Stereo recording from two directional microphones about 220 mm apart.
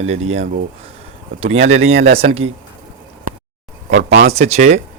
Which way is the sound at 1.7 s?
30° right (ahead or behind).